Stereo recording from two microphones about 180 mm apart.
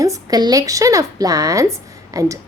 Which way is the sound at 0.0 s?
20° right (ahead or behind).